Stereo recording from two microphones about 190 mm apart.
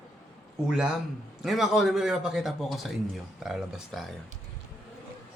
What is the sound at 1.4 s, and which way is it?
A man's voice, centre (ahead or behind).